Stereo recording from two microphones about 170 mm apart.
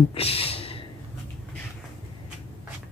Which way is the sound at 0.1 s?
35° left (ahead or behind).